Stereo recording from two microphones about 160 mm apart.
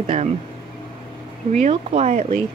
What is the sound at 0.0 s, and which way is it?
Speech, 40° right (ahead or behind).